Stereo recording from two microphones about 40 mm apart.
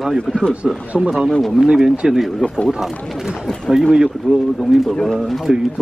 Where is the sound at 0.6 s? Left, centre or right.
Centre.